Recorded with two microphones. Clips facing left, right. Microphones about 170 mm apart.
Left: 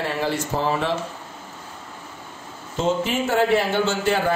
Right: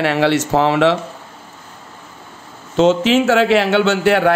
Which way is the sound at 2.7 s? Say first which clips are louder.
Right 9 dB; 80° right.